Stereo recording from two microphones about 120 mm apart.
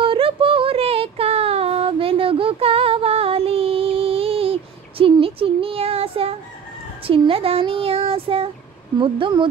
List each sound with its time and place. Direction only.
0.0 s yodeling: 50° right (ahead or behind)
5.2 s a sound: 50° right (ahead or behind)
7.1 s child singing: 50° right (ahead or behind)
8.9 s speech: 40° right (ahead or behind)